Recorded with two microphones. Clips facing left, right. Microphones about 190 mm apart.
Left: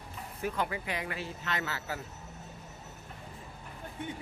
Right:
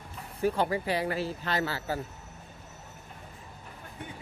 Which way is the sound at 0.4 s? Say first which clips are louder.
Right 7 dB; 30° right (ahead or behind).